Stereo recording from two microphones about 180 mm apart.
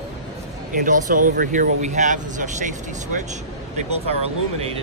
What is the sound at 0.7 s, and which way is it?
Speech, 45° right (ahead or behind).